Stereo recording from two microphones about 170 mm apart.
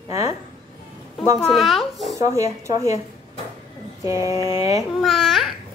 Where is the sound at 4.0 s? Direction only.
20° right (ahead or behind).